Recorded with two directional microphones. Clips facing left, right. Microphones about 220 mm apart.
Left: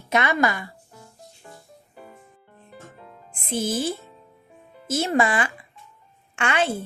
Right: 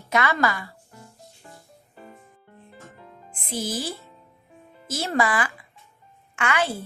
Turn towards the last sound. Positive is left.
turn(degrees=30)  # may be behind; listen again after turning